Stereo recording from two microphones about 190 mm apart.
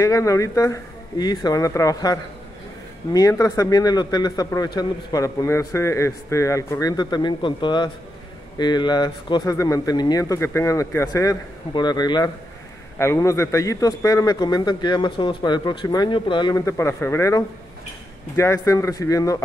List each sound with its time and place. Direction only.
0.0 s a man's voice: 15° left (ahead or behind)